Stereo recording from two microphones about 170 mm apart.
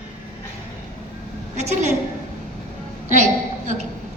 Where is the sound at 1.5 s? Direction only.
45° right (ahead or behind).